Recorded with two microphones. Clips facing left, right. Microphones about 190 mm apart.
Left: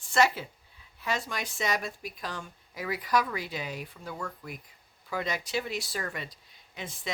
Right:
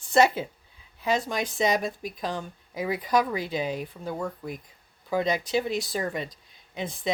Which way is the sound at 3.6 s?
45° right (ahead or behind).